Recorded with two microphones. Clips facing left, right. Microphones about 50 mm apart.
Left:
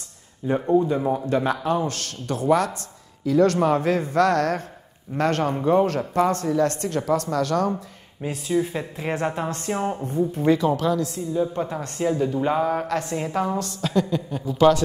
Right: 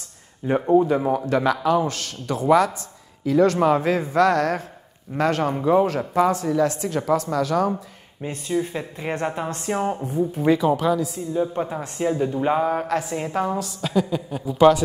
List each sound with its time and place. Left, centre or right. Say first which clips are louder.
0.4 s speech: right 2 dB; right
1.3 s speech: right 4 dB; right
1.8 s a man's voice: right 2 dB; centre